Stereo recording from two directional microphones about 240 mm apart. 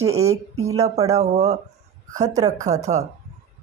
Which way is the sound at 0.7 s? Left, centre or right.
Right.